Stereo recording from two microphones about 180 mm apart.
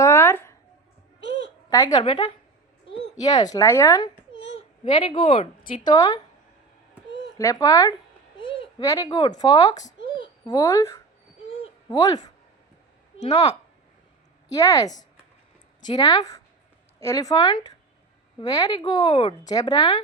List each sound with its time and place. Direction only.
0.0 s a sound: 15° left (ahead or behind)
1.7 s a child's voice: 20° left (ahead or behind)
4.5 s a sound: 40° left (ahead or behind)
5.1 s speech: 30° left (ahead or behind)
7.3 s speech: 20° left (ahead or behind)
14.5 s speech: 20° left (ahead or behind)